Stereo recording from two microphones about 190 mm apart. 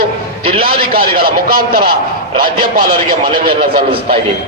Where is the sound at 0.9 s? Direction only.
50° right (ahead or behind).